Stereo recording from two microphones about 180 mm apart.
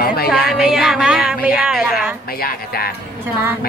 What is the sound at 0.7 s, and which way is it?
A woman's voice, centre (ahead or behind).